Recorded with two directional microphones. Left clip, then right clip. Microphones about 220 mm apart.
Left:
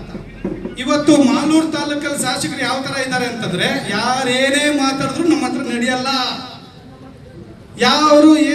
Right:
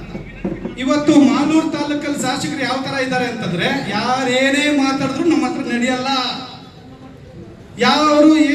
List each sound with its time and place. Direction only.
0.8 s a man's voice: 50° left (ahead or behind)
7.8 s a man's voice: 50° left (ahead or behind)